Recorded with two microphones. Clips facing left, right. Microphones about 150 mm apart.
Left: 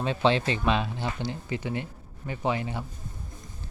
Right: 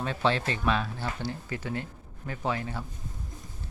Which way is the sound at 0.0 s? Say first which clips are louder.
Left 3 dB; 20° left (ahead or behind).